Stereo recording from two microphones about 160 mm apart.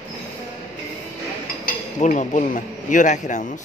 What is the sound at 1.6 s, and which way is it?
Speech, 55° left (ahead or behind).